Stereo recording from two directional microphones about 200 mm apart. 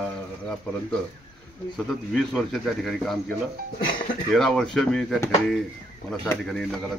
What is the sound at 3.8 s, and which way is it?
Speech, 45° left (ahead or behind).